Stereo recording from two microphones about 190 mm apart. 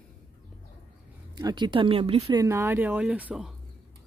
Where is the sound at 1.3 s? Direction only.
20° right (ahead or behind).